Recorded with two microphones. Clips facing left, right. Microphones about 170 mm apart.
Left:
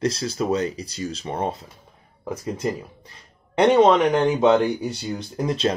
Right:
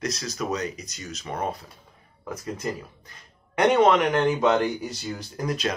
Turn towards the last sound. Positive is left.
turn(degrees=30)  # may be behind; listen again after turning